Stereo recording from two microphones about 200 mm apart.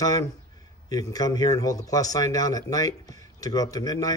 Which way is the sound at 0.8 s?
20° left (ahead or behind).